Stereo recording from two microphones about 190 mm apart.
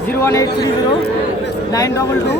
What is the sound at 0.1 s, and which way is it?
Speech, 15° left (ahead or behind).